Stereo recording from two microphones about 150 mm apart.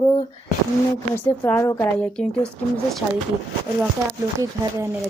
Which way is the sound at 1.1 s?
15° left (ahead or behind).